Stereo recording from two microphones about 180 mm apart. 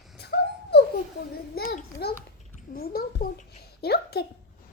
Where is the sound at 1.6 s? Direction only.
55° left (ahead or behind).